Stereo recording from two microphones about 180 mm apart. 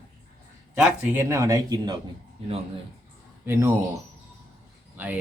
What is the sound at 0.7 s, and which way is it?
Speech, 15° right (ahead or behind).